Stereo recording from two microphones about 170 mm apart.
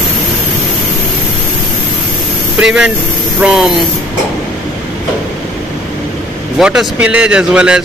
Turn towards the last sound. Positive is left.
turn(degrees=-5)  # may be behind; listen again after turning